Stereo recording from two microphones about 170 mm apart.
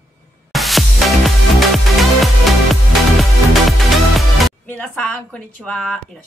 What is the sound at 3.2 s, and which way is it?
Music, centre (ahead or behind).